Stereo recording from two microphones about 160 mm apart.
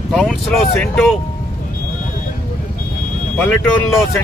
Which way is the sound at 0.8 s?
5° left (ahead or behind).